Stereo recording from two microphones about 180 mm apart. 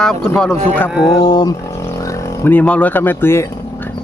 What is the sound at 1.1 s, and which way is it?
Speech, 20° left (ahead or behind).